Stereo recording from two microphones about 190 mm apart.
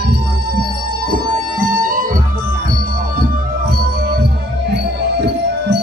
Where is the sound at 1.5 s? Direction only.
45° right (ahead or behind).